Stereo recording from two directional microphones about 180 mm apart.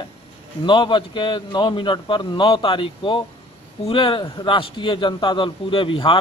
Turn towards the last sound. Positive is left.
turn(degrees=30)  # may be behind; listen again after turning